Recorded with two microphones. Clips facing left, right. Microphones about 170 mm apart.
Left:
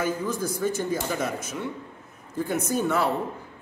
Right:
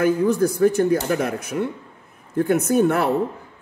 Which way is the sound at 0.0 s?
60° right (ahead or behind).